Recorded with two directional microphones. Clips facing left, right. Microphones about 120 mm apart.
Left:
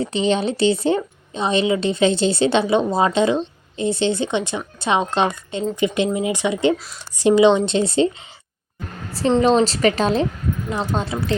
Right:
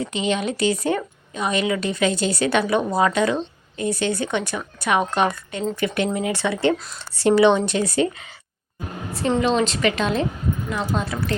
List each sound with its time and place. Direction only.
0.0 s speech: 30° left (ahead or behind)
9.1 s a woman's voice: 30° left (ahead or behind)